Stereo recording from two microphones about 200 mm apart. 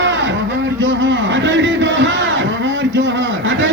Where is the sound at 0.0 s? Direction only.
65° right (ahead or behind).